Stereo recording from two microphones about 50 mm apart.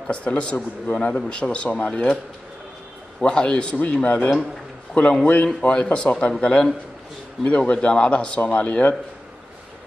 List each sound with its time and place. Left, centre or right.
0.0 s a man's voice: left
3.2 s a man's voice: centre